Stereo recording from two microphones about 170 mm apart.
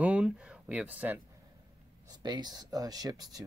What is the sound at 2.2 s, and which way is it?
Speech, 25° right (ahead or behind).